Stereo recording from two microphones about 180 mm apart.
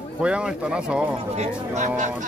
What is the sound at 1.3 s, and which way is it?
Speech, 40° right (ahead or behind).